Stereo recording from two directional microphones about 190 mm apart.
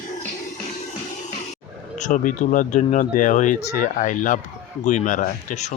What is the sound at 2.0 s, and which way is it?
Speech, 40° left (ahead or behind).